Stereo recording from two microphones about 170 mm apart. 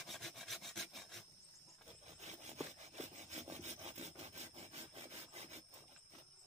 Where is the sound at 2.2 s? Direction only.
40° right (ahead or behind).